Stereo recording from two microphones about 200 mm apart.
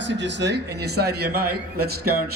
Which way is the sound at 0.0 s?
65° right (ahead or behind).